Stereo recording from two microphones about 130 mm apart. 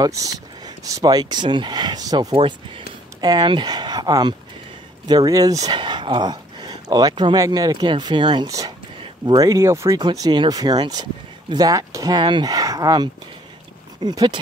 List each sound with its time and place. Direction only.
0.0 s speech: 25° right (ahead or behind)
2.3 s speech: 40° right (ahead or behind); by 10.0 s 25° right (ahead or behind)
10.0 s speech: 35° right (ahead or behind)